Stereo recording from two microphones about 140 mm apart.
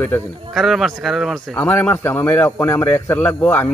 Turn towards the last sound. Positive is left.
turn(degrees=15)  # may be behind; listen again after turning